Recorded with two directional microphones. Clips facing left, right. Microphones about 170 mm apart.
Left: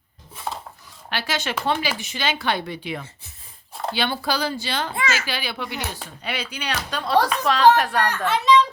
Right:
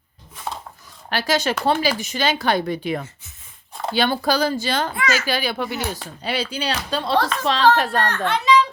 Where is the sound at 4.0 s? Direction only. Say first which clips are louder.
Right 6 dB; 45° right (ahead or behind).